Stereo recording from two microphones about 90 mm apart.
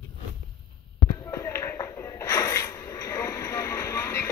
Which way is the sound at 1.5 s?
30° left (ahead or behind).